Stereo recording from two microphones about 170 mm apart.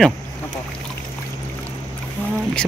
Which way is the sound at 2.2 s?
10° left (ahead or behind).